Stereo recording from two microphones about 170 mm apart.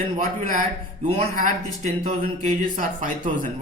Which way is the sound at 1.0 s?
40° right (ahead or behind).